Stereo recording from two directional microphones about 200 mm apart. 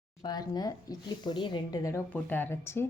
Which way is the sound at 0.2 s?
20° left (ahead or behind).